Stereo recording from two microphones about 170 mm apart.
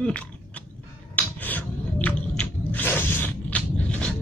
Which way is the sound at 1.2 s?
10° left (ahead or behind).